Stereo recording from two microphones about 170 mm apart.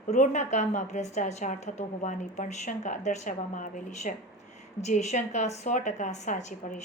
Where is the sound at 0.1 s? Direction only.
45° left (ahead or behind).